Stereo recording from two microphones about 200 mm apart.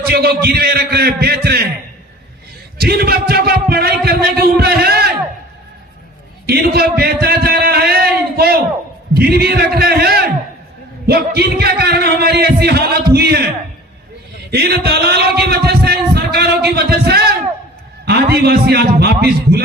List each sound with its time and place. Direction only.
0.1 s a man's voice: 50° right (ahead or behind)
2.7 s a man's voice: 50° right (ahead or behind)
6.4 s a man's voice: 50° right (ahead or behind)
14.5 s a man's voice: 50° right (ahead or behind)